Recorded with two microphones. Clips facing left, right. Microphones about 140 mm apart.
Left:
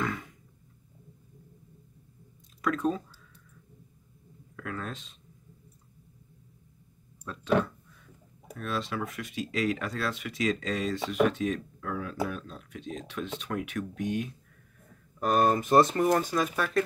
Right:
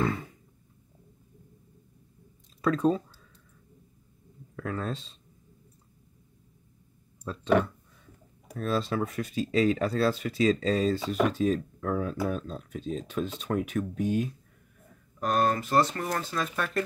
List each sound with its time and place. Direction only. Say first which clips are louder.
0.0 s a sound: right 4 dB; 30° right (ahead or behind)
2.6 s speech: right 4 dB; 30° right (ahead or behind)
4.6 s speech: right 4 dB; 30° right (ahead or behind)
8.5 s speech: right 5 dB; 35° right (ahead or behind)
15.1 s speech: left 2 dB; 5° left (ahead or behind)